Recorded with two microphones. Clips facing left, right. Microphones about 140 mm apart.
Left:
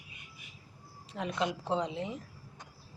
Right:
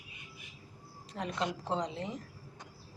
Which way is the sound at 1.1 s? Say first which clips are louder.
Left 2 dB; 5° left (ahead or behind).